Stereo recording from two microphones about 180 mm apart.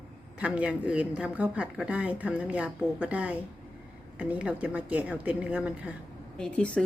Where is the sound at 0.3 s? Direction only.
5° right (ahead or behind).